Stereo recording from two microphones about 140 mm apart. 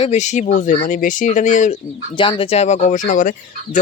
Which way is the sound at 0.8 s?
70° left (ahead or behind).